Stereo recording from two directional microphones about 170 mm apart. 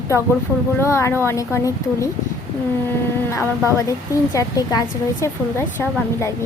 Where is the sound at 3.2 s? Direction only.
15° left (ahead or behind).